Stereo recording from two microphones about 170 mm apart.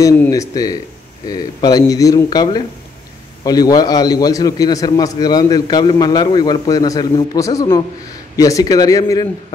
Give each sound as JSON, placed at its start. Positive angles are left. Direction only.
{"t": 0.0, "sound": "a man's voice", "side_deg": 20}